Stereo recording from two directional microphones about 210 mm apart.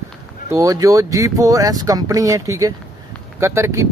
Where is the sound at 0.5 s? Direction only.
15° right (ahead or behind).